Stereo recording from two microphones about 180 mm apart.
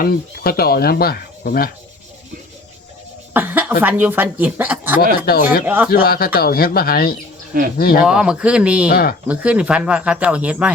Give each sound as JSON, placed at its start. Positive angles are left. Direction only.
{"t": 0.0, "sound": "speech", "side_deg": 55}
{"t": 3.3, "sound": "speech", "side_deg": -10}
{"t": 5.2, "sound": "speech", "side_deg": 55}
{"t": 5.6, "sound": "speech", "side_deg": -10}
{"t": 5.9, "sound": "speech", "side_deg": 55}
{"t": 8.0, "sound": "speech", "side_deg": -5}
{"t": 8.9, "sound": "speech", "side_deg": 55}
{"t": 9.2, "sound": "speech", "side_deg": -5}